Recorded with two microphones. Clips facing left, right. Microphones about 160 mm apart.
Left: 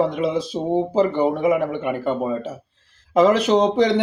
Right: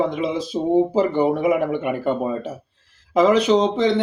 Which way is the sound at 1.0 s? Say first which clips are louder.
Even; 10° right (ahead or behind).